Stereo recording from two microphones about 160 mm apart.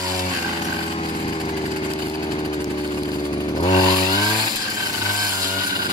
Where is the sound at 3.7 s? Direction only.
25° left (ahead or behind).